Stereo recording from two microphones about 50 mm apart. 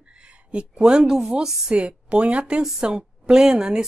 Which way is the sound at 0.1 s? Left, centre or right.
Right.